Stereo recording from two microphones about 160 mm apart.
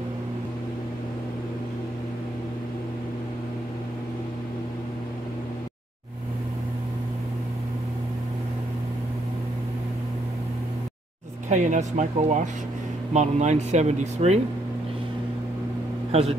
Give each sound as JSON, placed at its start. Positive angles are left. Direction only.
{"t": 11.4, "sound": "speech", "side_deg": -50}
{"t": 16.1, "sound": "a man's voice", "side_deg": -40}